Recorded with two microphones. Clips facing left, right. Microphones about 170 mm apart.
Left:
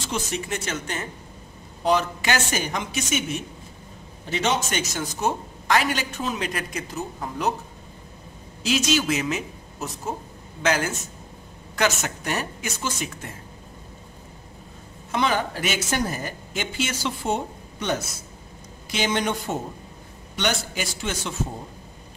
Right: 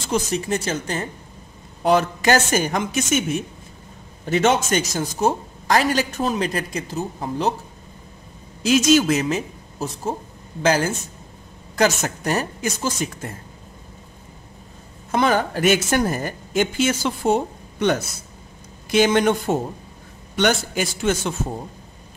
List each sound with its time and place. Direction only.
0.1 s a man's voice: 35° right (ahead or behind)
1.9 s speech: 45° right (ahead or behind)
4.3 s a man's voice: 50° right (ahead or behind); by 7.5 s 30° right (ahead or behind)
8.6 s a man's voice: 45° right (ahead or behind)
15.0 s speech: 45° right (ahead or behind)